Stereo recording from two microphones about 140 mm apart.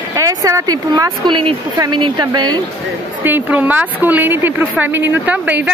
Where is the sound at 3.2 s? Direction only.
15° right (ahead or behind).